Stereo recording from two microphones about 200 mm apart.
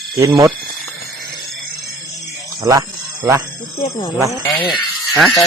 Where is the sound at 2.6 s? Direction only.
15° right (ahead or behind).